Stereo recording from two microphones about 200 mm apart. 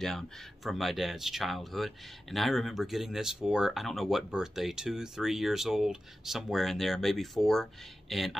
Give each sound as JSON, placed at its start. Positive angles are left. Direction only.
{"t": 0.7, "sound": "speech", "side_deg": 0}